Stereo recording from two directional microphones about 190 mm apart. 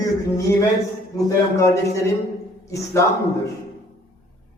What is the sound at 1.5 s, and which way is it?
A man's voice, 15° left (ahead or behind).